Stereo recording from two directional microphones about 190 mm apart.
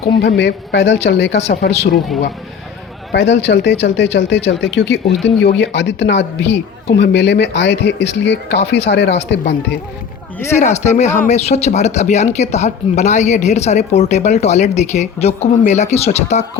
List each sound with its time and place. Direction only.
0.2 s a man's voice: 65° left (ahead or behind)
3.1 s speech: 65° left (ahead or behind)
10.6 s speech: 35° left (ahead or behind)